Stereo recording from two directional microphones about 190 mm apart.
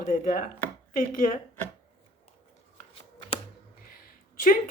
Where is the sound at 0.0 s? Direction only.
45° left (ahead or behind).